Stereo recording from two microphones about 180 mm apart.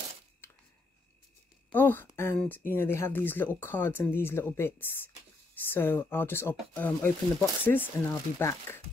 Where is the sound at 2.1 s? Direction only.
10° left (ahead or behind).